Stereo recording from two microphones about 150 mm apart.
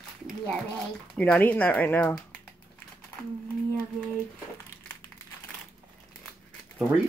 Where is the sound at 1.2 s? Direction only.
10° left (ahead or behind).